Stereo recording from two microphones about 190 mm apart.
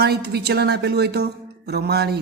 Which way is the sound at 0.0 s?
60° right (ahead or behind).